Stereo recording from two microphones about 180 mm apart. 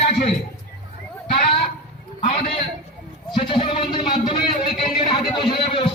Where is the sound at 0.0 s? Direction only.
35° left (ahead or behind).